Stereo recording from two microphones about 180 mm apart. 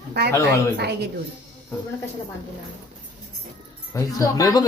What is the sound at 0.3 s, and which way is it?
Speech, 15° left (ahead or behind).